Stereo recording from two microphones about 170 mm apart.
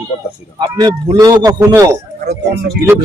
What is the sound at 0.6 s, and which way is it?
A man's voice, 25° right (ahead or behind).